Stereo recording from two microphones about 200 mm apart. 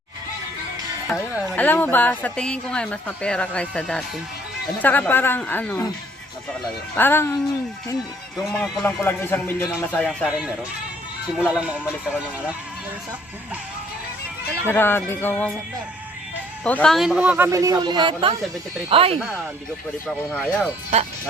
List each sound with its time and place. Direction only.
1.4 s a man's voice: 5° left (ahead or behind)
6.9 s a man's voice: 10° left (ahead or behind)
8.4 s a man's voice: 5° left (ahead or behind)
11.3 s speech: 5° right (ahead or behind)
14.7 s a man's voice: 10° left (ahead or behind)
16.6 s speech: 5° left (ahead or behind); by 19.2 s 30° right (ahead or behind)
20.3 s speech: 5° left (ahead or behind)